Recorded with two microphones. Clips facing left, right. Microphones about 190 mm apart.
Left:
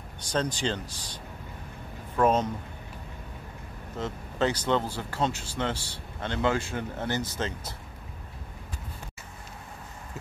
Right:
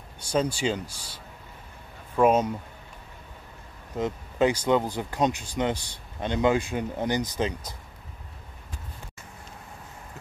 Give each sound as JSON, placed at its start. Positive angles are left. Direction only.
{"t": 0.2, "sound": "speech", "side_deg": -10}
{"t": 4.0, "sound": "speech", "side_deg": -10}